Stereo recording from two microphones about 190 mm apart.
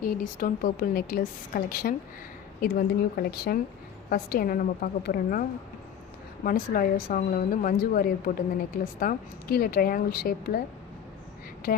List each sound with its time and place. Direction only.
0.0 s a woman's voice: 45° left (ahead or behind)
11.6 s speech: 50° left (ahead or behind)